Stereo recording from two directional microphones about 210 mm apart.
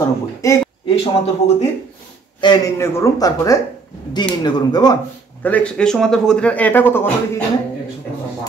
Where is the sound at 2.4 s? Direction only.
15° left (ahead or behind).